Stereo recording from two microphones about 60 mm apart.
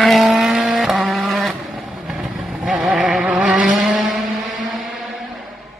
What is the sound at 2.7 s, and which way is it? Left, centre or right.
Vehicle, centre.